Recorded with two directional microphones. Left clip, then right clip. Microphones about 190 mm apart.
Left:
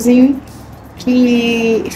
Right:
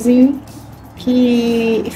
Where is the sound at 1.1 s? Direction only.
20° right (ahead or behind).